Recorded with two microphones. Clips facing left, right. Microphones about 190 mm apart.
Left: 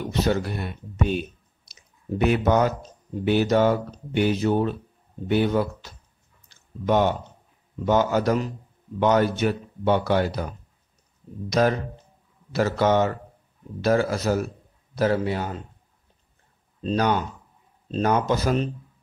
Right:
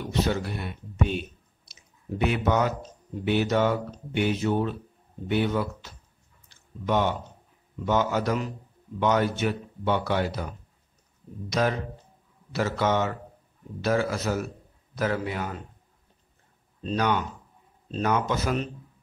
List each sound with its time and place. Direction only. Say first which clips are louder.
0.2 s speech: left 3 dB; 40° left (ahead or behind)
1.7 s a sound: left 4 dB; 40° left (ahead or behind)
3.3 s speech: left 4 dB; 40° left (ahead or behind)
7.8 s speech: left 4 dB; 40° left (ahead or behind)
11.4 s speech: left 4 dB; 40° left (ahead or behind)
16.8 s speech: left 3 dB; 35° left (ahead or behind)